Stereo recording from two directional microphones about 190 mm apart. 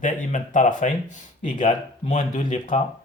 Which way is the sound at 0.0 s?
40° left (ahead or behind).